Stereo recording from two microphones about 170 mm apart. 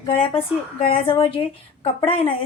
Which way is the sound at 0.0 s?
35° left (ahead or behind).